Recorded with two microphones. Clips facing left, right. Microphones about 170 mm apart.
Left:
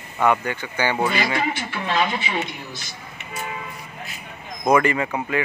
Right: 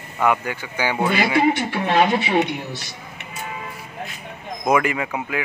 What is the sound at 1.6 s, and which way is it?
A man's voice, 50° right (ahead or behind).